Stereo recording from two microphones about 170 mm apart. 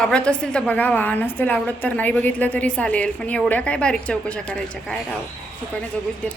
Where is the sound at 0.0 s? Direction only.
5° left (ahead or behind).